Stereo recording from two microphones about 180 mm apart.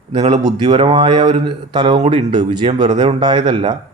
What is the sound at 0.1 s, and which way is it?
A man's voice, 25° right (ahead or behind).